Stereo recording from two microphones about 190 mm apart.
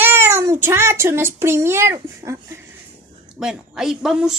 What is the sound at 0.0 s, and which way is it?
A child's voice, 10° right (ahead or behind).